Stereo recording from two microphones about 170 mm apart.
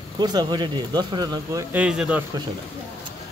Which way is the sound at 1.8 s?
5° right (ahead or behind).